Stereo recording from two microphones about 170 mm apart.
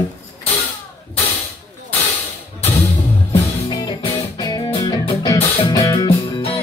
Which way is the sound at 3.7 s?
25° left (ahead or behind).